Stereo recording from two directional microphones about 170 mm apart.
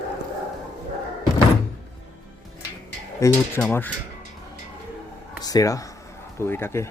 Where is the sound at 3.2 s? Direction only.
15° left (ahead or behind).